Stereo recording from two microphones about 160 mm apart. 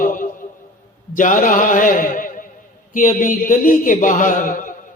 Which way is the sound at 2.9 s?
55° left (ahead or behind).